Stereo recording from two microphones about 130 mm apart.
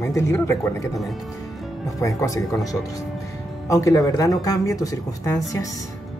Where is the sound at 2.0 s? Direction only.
25° left (ahead or behind).